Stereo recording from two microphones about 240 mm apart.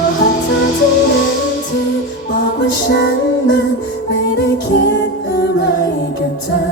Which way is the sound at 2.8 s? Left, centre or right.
Left.